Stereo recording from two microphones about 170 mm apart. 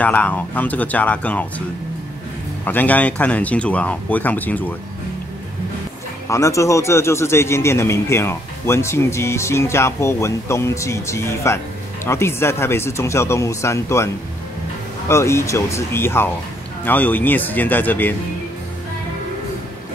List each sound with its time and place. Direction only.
0.0 s a man's voice: 10° left (ahead or behind)
2.6 s a man's voice: 10° left (ahead or behind)
6.2 s a man's voice: 15° left (ahead or behind)